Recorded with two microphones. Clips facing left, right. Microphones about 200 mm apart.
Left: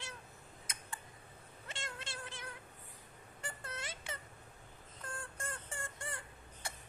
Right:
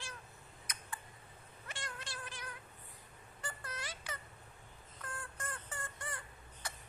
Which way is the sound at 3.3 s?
25° left (ahead or behind).